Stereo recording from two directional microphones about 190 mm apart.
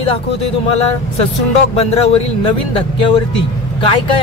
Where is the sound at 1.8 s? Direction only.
30° left (ahead or behind).